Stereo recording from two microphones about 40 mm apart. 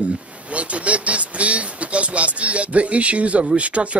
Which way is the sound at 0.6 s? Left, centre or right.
Right.